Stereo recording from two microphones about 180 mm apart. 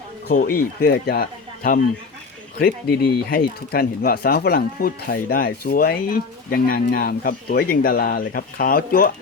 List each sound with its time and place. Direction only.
0.3 s speech: 55° left (ahead or behind)